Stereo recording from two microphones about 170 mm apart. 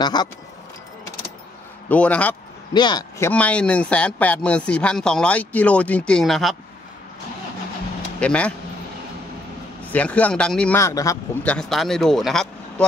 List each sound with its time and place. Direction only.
0.0 s speech: 25° left (ahead or behind)
1.9 s speech: 10° left (ahead or behind)
2.7 s speech: 25° left (ahead or behind)
3.3 s speech: 10° left (ahead or behind)
8.2 s speech: 5° left (ahead or behind)
9.9 s speech: 10° left (ahead or behind)
10.8 s speech: 20° left (ahead or behind)
11.4 s speech: 5° left (ahead or behind)